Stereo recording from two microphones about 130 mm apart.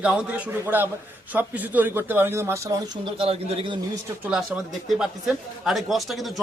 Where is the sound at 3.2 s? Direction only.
50° right (ahead or behind).